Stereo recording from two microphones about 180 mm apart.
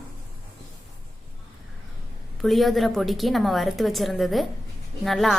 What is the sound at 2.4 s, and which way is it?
A woman's voice, centre (ahead or behind).